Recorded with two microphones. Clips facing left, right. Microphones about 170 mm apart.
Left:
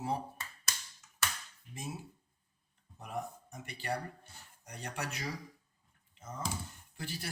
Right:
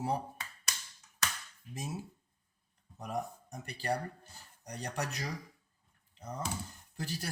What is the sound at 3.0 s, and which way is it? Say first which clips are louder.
Speech: right 3 dB; 35° right (ahead or behind).